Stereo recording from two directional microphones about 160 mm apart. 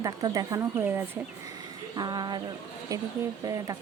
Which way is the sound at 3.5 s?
20° right (ahead or behind).